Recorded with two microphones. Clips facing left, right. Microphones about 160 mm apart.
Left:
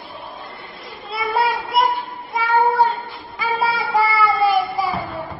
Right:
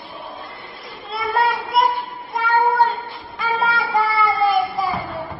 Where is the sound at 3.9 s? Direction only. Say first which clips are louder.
Left 3 dB; centre (ahead or behind).